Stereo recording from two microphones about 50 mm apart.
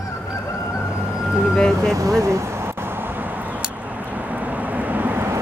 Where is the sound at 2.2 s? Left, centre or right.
Right.